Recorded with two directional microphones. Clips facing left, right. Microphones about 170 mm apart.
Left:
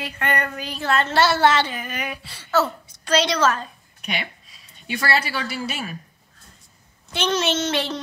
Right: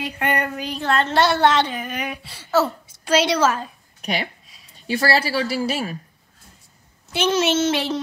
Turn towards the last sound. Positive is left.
turn(degrees=-5)  # may be behind; listen again after turning